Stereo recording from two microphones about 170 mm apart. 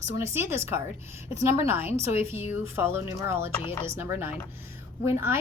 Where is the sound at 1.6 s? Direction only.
15° right (ahead or behind).